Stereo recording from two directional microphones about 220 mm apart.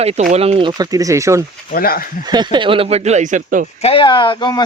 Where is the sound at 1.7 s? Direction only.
40° left (ahead or behind).